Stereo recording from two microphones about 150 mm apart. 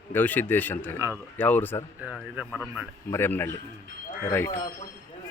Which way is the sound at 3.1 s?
15° left (ahead or behind).